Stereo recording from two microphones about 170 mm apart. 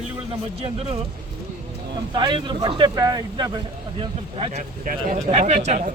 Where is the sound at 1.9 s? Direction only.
25° right (ahead or behind).